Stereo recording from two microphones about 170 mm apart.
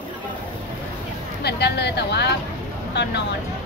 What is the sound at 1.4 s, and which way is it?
Speech, 80° left.